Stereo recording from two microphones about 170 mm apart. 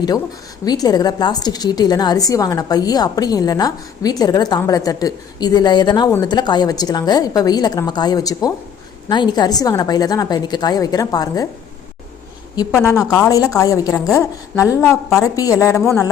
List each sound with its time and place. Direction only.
0.6 s a woman's voice: 20° left (ahead or behind)
12.5 s a woman's voice: 20° left (ahead or behind)